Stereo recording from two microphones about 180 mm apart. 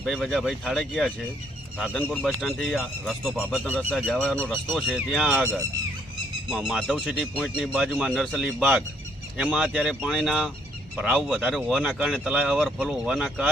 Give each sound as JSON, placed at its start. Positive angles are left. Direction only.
{"t": 0.0, "sound": "speech", "side_deg": 0}